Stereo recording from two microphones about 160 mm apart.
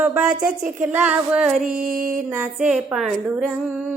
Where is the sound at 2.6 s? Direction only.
5° right (ahead or behind).